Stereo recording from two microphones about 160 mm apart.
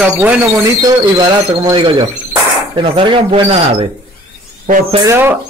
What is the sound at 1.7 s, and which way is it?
Speech, 30° right (ahead or behind).